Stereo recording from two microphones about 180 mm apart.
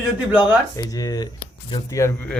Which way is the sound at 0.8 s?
20° left (ahead or behind).